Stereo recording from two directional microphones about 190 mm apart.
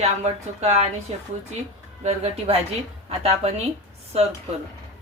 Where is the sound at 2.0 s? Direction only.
35° right (ahead or behind).